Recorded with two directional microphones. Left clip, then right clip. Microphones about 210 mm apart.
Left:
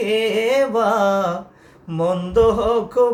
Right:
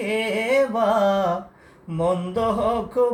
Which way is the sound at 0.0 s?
20° left (ahead or behind).